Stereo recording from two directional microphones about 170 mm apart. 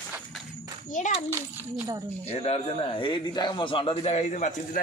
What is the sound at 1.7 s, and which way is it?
Speech, 20° right (ahead or behind).